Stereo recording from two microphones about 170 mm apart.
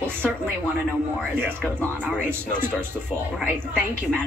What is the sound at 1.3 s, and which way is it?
A woman's voice, 10° right (ahead or behind).